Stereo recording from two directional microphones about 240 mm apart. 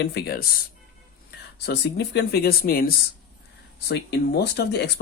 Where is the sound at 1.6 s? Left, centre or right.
Left.